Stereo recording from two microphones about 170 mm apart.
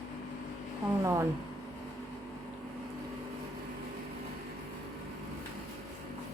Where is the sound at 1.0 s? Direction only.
15° right (ahead or behind).